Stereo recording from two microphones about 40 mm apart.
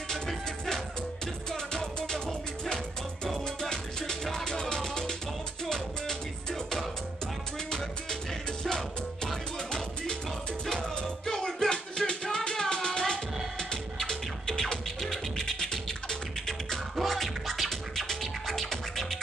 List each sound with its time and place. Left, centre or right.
0.1 s music: centre
8.6 s music: centre
11.0 s music: centre